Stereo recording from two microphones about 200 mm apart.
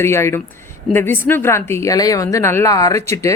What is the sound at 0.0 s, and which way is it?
A woman's voice, 15° left (ahead or behind).